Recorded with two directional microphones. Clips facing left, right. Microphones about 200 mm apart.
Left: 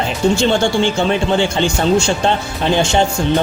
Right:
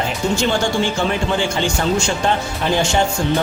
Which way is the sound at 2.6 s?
25° left (ahead or behind).